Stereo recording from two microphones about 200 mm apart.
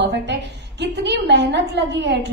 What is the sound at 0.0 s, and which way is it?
A woman's voice, 60° right (ahead or behind).